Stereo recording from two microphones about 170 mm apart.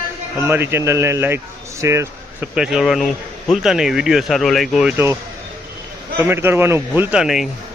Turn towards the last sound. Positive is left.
turn(degrees=0)  # may be behind; listen again after turning